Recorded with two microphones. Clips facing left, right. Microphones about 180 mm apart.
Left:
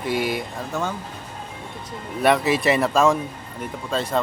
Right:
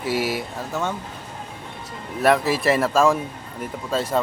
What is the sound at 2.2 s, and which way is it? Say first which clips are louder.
Music: even; centre (ahead or behind).